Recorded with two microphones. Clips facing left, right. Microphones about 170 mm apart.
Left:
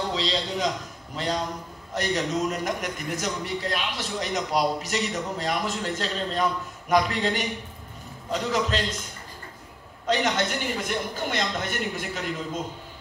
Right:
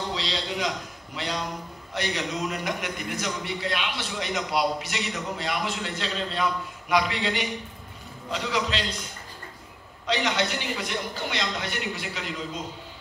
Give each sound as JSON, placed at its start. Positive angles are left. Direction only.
{"t": 0.1, "sound": "a man's voice", "side_deg": 40}
{"t": 10.0, "sound": "a man's voice", "side_deg": 45}